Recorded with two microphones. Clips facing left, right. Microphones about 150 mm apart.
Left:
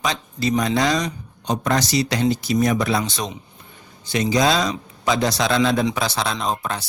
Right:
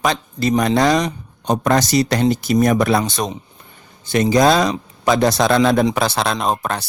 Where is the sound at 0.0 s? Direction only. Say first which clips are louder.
Right 4 dB; 55° right (ahead or behind).